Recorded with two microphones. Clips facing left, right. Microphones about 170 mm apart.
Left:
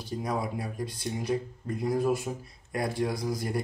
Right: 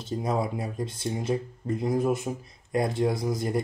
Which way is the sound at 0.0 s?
25° right (ahead or behind).